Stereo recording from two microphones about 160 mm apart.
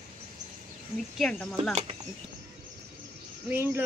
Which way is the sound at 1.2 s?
Centre (ahead or behind).